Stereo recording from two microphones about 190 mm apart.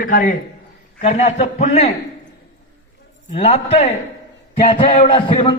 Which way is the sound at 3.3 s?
35° left (ahead or behind).